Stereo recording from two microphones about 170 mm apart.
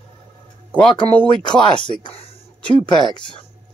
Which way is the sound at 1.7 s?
30° left (ahead or behind).